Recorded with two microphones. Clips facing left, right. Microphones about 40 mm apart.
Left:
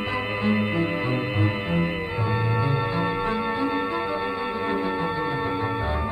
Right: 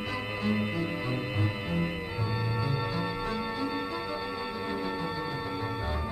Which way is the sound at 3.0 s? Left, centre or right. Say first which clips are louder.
Left 7 dB; left.